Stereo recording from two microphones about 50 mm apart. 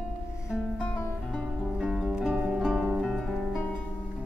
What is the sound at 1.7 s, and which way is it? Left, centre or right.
Music, centre.